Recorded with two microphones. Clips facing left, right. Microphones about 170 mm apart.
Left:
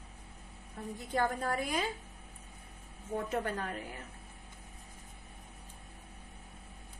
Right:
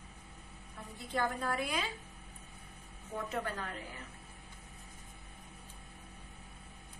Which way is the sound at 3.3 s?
45° left (ahead or behind).